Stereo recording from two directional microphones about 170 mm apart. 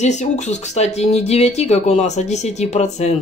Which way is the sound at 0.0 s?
40° left (ahead or behind).